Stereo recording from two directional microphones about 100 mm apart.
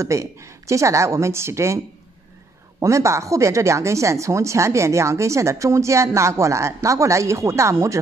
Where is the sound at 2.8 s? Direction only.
30° right (ahead or behind).